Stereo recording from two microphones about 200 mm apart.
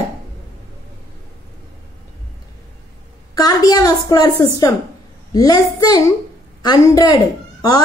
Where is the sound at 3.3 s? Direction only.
20° left (ahead or behind).